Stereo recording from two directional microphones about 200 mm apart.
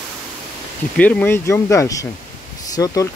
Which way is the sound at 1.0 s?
10° left (ahead or behind).